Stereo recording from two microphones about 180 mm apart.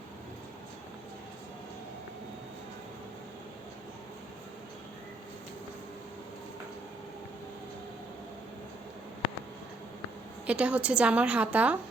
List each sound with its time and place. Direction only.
10.4 s a woman's voice: 5° right (ahead or behind)